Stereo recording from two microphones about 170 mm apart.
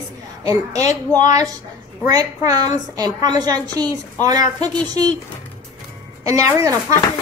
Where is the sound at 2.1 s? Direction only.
20° right (ahead or behind).